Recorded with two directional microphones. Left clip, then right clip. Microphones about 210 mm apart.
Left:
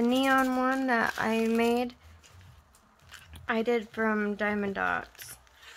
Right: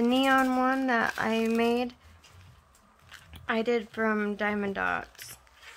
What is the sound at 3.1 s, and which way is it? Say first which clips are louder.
Speech: right 1 dB; centre (ahead or behind).